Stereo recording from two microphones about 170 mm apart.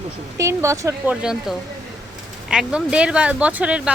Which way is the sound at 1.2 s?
5° right (ahead or behind).